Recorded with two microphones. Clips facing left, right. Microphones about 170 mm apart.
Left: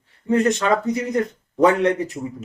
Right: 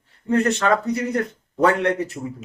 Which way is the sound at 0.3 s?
15° left (ahead or behind).